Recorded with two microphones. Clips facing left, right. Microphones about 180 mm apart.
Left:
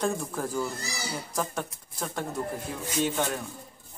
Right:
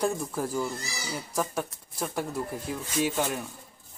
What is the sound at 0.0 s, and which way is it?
Speech, 10° right (ahead or behind).